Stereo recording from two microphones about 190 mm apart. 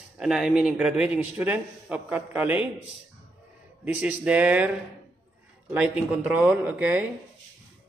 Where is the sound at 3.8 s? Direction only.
5° right (ahead or behind).